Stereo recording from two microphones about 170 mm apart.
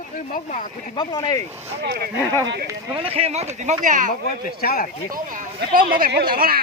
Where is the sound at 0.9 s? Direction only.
25° left (ahead or behind).